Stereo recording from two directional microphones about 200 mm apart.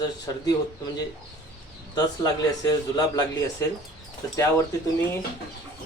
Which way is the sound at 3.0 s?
20° left (ahead or behind).